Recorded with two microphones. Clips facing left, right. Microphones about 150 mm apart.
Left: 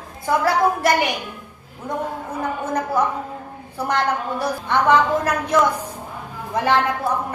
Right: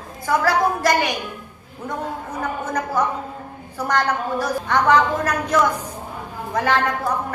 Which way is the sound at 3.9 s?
25° left (ahead or behind).